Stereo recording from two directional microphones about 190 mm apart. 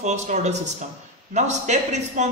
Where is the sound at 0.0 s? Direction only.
35° right (ahead or behind).